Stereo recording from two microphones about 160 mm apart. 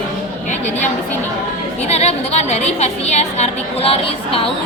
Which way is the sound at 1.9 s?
40° left (ahead or behind).